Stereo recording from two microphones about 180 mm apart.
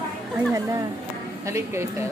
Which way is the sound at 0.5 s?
20° right (ahead or behind).